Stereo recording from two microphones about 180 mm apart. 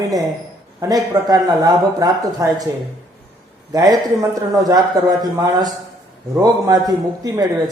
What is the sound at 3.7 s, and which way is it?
Speech, 20° right (ahead or behind).